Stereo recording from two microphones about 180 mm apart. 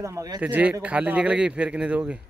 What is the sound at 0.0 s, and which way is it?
Speech, 20° right (ahead or behind).